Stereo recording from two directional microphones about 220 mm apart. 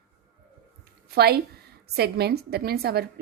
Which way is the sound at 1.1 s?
45° right (ahead or behind).